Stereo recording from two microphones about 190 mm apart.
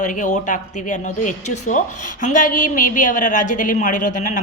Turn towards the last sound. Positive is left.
turn(degrees=40)  # may be behind; listen again after turning